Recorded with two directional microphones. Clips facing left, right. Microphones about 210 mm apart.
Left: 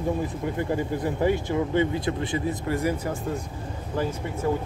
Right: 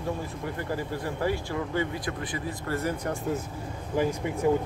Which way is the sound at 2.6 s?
15° left (ahead or behind).